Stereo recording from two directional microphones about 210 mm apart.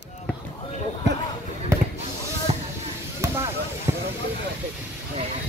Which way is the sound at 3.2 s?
15° right (ahead or behind).